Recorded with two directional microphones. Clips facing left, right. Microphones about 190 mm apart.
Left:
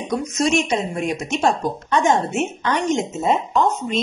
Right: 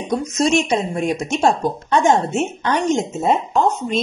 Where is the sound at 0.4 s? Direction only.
30° right (ahead or behind).